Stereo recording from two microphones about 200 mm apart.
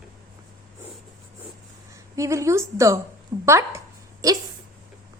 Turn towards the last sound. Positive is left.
turn(degrees=-15)  # may be behind; listen again after turning